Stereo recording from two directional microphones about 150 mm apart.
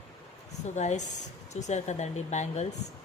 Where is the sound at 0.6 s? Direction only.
50° left (ahead or behind).